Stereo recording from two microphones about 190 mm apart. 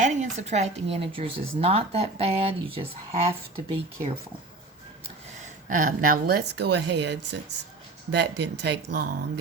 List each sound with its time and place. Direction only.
0.0 s a woman's voice: 40° right (ahead or behind)
5.6 s speech: 45° right (ahead or behind); by 9.4 s 60° right (ahead or behind)